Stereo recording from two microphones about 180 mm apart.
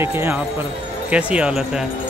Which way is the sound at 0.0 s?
15° right (ahead or behind).